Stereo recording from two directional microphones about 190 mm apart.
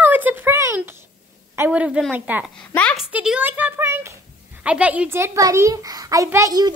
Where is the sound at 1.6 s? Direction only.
5° right (ahead or behind).